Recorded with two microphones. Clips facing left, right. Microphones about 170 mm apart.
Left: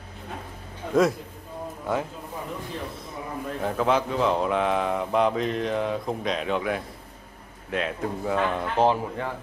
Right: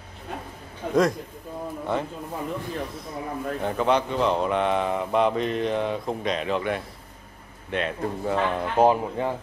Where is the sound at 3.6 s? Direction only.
Centre (ahead or behind).